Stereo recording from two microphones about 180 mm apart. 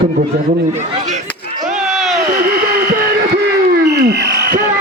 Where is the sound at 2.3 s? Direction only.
55° right (ahead or behind).